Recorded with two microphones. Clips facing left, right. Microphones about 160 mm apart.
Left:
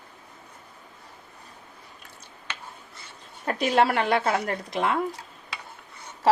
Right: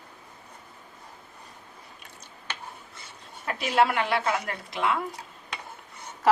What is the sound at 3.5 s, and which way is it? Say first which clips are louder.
Speech: left 2 dB; 40° left (ahead or behind).